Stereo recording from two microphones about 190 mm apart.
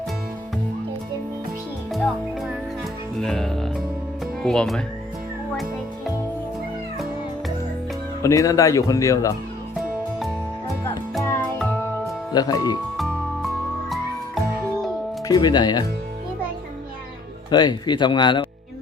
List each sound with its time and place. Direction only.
1.9 s music: centre (ahead or behind)
4.4 s speech: centre (ahead or behind)
8.2 s speech: 15° left (ahead or behind)
11.2 s music: 10° left (ahead or behind)
12.3 s speech: 20° left (ahead or behind)
13.9 s music: centre (ahead or behind)
15.3 s speech: 20° left (ahead or behind)
17.5 s speech: 25° left (ahead or behind)